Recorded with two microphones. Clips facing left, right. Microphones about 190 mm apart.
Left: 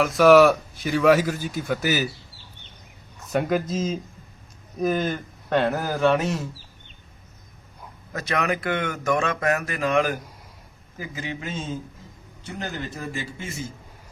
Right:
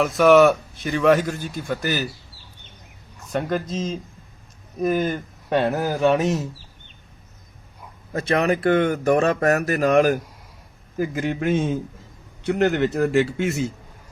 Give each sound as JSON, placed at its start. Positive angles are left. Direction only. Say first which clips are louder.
{"t": 0.0, "sound": "speech", "louder": "even", "side_deg": 0}
{"t": 3.2, "sound": "speech", "louder": "left 1 dB", "side_deg": 5}
{"t": 8.1, "sound": "speech", "louder": "right 5 dB", "side_deg": -30}
{"t": 10.9, "sound": "a man's voice", "louder": "right 9 dB", "side_deg": -55}